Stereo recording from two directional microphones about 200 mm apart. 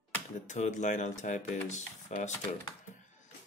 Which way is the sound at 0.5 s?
35° left (ahead or behind).